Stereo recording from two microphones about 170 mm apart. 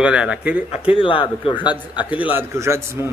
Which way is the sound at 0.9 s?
30° left (ahead or behind).